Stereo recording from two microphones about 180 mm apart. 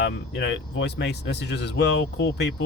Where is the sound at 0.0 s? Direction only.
75° left (ahead or behind).